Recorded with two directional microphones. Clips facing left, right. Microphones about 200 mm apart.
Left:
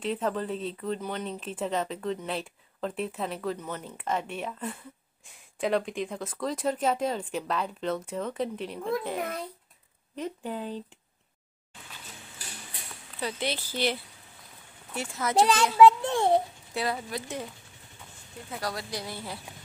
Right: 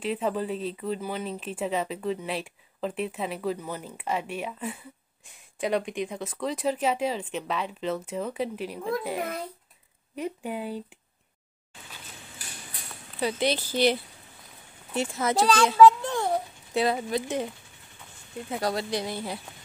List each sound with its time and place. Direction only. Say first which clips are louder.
0.0 s a woman's voice: right 1 dB; 5° right (ahead or behind)
13.2 s a woman's voice: right 6 dB; 15° right (ahead or behind)
15.0 s speech: right 5 dB; 25° right (ahead or behind)
15.3 s a child's voice: right 1 dB; 20° left (ahead or behind)
16.7 s speech: right 6 dB; 25° right (ahead or behind)
18.5 s speech: right 6 dB; 25° right (ahead or behind)